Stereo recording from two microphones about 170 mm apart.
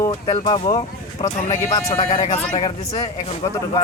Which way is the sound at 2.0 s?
45° left (ahead or behind).